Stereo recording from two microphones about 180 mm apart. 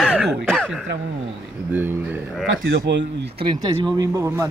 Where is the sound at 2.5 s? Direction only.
85° right.